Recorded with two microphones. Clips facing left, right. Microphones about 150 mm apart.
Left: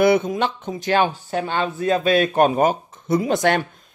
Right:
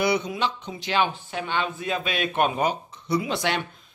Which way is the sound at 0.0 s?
50° left (ahead or behind).